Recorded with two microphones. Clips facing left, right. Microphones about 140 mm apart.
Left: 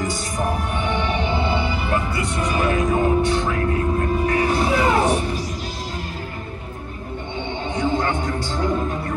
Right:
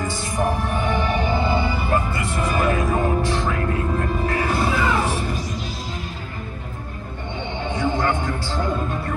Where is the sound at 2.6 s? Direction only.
35° right (ahead or behind).